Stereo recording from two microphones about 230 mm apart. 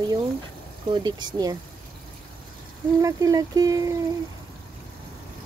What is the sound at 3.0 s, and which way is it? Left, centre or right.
Speech, centre.